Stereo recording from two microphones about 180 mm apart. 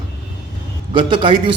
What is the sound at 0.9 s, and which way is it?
Speech, 25° right (ahead or behind).